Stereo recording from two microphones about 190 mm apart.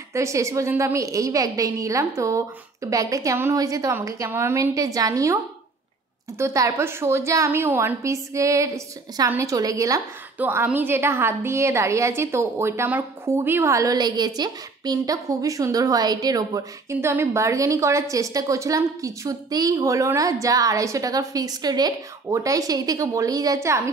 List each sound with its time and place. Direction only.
0.1 s a woman's voice: 15° right (ahead or behind)